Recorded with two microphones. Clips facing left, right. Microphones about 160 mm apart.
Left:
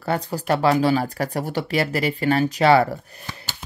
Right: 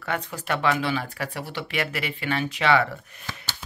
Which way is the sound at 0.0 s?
35° left (ahead or behind).